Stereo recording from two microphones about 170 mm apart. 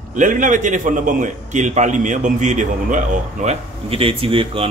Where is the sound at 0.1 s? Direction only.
50° right (ahead or behind).